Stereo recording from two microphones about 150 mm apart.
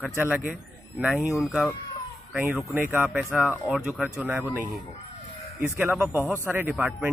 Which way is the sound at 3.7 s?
Centre (ahead or behind).